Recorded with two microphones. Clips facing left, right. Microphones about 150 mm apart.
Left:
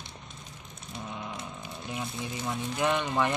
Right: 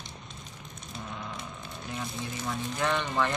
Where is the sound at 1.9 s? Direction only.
15° left (ahead or behind).